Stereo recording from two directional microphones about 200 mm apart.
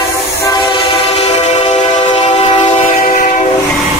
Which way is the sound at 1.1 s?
30° left (ahead or behind).